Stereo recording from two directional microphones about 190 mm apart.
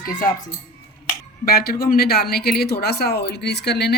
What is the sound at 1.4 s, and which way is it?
Speech, 50° left (ahead or behind).